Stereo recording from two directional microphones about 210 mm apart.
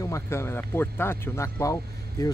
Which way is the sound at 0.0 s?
15° left (ahead or behind).